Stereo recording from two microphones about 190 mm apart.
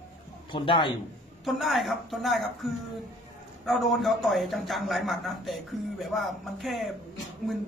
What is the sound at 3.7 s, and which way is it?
A man's voice, centre (ahead or behind).